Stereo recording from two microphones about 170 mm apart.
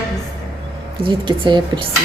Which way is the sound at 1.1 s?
25° right (ahead or behind).